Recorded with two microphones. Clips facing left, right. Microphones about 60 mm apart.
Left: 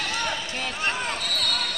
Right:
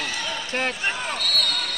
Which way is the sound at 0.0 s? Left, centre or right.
Left.